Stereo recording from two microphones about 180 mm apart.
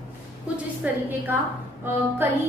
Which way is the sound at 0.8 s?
10° right (ahead or behind).